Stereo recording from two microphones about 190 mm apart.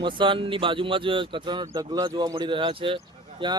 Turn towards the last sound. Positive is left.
turn(degrees=-25)  # may be behind; listen again after turning